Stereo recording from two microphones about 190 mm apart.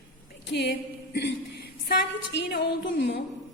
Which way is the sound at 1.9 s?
55° left (ahead or behind).